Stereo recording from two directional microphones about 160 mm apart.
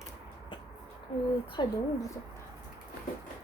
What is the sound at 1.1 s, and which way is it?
Speech, 35° left (ahead or behind).